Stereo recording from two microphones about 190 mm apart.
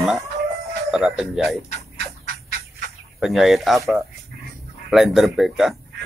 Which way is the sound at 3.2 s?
Centre (ahead or behind).